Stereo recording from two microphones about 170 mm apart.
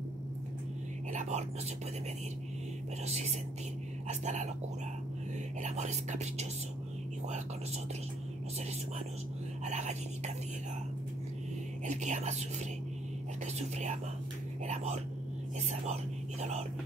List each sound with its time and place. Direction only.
1.1 s whispering: 45° right (ahead or behind)
3.1 s speech: 40° right (ahead or behind)
5.6 s speech: 45° right (ahead or behind)
9.7 s speech: 45° right (ahead or behind)
11.8 s speech: 45° right (ahead or behind)
13.6 s speech: 40° right (ahead or behind)
15.7 s speech: 40° right (ahead or behind)